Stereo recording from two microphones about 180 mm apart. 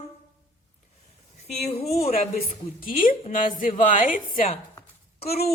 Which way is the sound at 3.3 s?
50° left (ahead or behind).